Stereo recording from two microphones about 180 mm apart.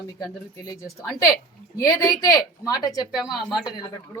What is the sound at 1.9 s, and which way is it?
A woman's voice, 20° left (ahead or behind).